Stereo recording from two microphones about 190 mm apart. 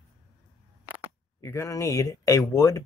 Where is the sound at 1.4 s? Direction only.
15° left (ahead or behind).